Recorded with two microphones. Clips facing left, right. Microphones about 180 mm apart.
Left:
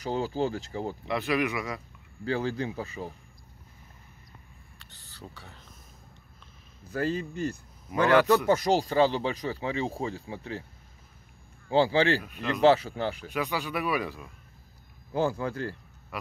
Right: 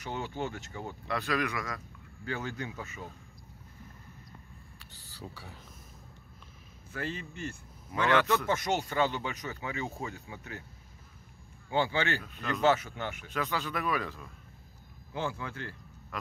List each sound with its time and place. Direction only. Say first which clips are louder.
0.0 s speech: left 7 dB; 35° left (ahead or behind)
1.0 s a man's voice: left 3 dB; 15° left (ahead or behind)
2.2 s speech: left 7 dB; 35° left (ahead or behind)
4.7 s a sound: even; 10° right (ahead or behind)
6.9 s speech: left 8 dB; 40° left (ahead or behind)
11.7 s speech: left 7 dB; 35° left (ahead or behind)
12.2 s a man's voice: left 5 dB; 15° left (ahead or behind)
12.6 s speech: left 6 dB; 35° left (ahead or behind)
13.3 s a man's voice: left 3 dB; 15° left (ahead or behind)
15.1 s speech: left 8 dB; 40° left (ahead or behind)